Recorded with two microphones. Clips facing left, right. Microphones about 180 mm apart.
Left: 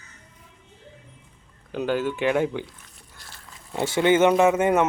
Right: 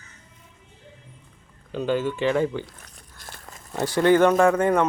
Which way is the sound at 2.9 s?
50° right (ahead or behind).